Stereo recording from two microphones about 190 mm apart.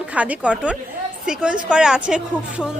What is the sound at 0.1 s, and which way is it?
A woman's voice, 5° right (ahead or behind).